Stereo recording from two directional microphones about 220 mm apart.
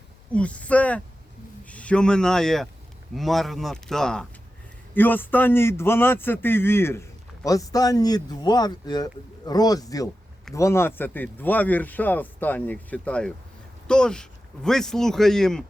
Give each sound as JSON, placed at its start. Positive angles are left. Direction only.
{"t": 0.3, "sound": "a man's voice", "side_deg": 5}